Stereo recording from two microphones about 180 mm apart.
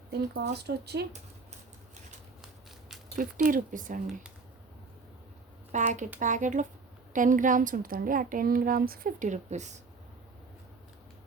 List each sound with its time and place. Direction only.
0.1 s speech: 65° right (ahead or behind)
3.2 s a woman's voice: 50° right (ahead or behind)
5.7 s a woman's voice: 45° right (ahead or behind)